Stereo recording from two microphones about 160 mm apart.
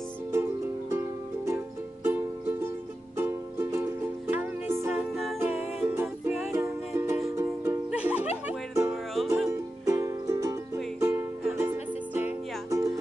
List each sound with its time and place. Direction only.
0.3 s music: 15° right (ahead or behind)
8.9 s music: centre (ahead or behind)
9.5 s music: 20° right (ahead or behind)